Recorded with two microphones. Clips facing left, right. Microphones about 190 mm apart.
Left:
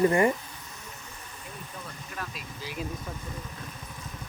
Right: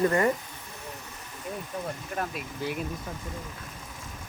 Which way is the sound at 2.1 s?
50° right (ahead or behind).